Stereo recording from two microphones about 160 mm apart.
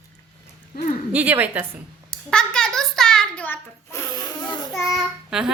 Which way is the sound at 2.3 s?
5° left (ahead or behind).